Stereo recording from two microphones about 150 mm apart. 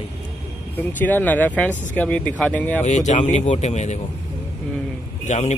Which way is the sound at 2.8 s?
50° left (ahead or behind).